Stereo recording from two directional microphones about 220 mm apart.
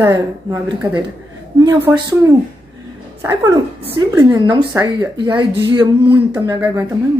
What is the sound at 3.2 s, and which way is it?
Speech, 20° right (ahead or behind).